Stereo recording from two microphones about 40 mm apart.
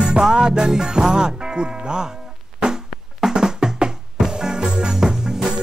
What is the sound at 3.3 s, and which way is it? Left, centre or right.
Music, centre.